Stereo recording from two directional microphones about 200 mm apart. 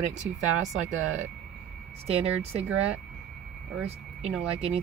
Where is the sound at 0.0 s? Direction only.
35° right (ahead or behind).